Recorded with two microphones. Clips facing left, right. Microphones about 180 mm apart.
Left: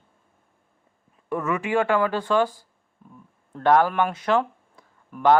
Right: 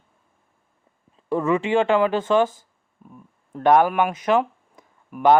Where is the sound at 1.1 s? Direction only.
30° right (ahead or behind).